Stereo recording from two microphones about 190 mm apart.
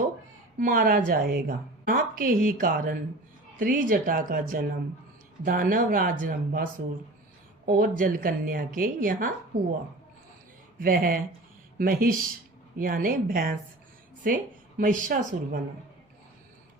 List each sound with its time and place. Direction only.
0.6 s a woman's voice: 50° right (ahead or behind)
10.8 s a woman's voice: 50° right (ahead or behind)